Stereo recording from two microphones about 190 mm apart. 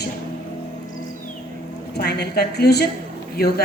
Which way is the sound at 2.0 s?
60° left (ahead or behind).